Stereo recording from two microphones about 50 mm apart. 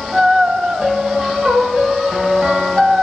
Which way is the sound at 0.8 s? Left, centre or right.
Centre.